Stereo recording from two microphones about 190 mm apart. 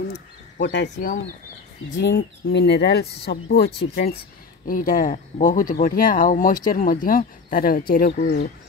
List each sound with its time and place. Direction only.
0.1 s a sound: 65° left (ahead or behind)
2.0 s speech: 70° left (ahead or behind)
4.6 s speech: 45° left (ahead or behind)